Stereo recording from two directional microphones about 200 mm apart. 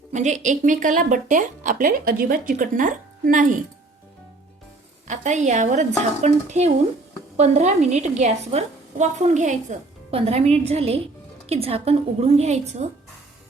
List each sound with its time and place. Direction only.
0.1 s a woman's voice: 35° right (ahead or behind)
5.0 s a woman's voice: 35° right (ahead or behind)